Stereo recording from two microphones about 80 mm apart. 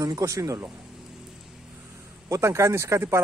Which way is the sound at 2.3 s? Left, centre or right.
Right.